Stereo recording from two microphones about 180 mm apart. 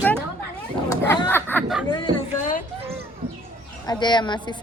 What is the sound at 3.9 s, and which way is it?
Speech, 25° left (ahead or behind).